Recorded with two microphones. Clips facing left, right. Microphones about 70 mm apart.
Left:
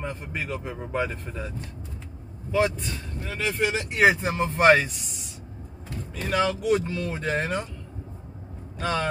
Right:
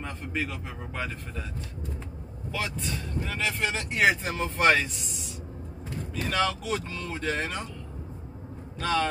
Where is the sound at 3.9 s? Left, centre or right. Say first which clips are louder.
Left 3 dB; centre.